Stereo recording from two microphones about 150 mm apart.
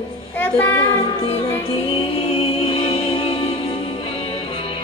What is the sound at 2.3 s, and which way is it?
Music, 35° left (ahead or behind).